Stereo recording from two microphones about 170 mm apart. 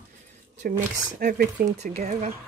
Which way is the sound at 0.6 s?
50° right (ahead or behind).